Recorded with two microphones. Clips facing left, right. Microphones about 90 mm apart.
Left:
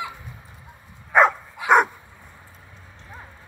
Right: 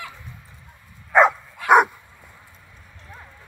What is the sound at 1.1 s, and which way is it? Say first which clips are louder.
Dog: right 1 dB; centre (ahead or behind).